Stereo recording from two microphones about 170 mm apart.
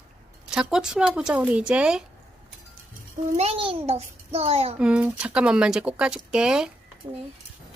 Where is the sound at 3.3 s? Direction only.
35° right (ahead or behind).